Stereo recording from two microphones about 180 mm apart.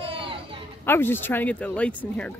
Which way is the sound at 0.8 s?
10° left (ahead or behind).